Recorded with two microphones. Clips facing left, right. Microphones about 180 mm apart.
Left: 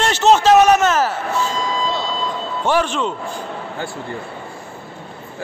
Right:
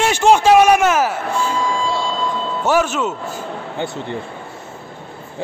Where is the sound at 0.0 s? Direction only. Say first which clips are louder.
Right 1 dB; 10° right (ahead or behind).